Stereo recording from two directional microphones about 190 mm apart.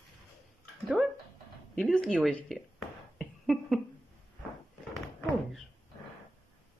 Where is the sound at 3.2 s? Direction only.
Centre (ahead or behind).